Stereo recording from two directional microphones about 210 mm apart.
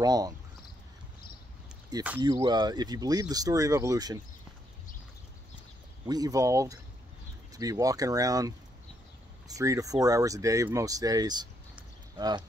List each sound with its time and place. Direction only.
0.0 s speech: 15° right (ahead or behind)
1.9 s speech: 20° right (ahead or behind)
6.0 s speech: 20° right (ahead or behind)